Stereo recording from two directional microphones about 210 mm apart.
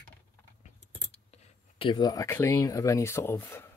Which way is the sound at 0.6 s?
30° left (ahead or behind).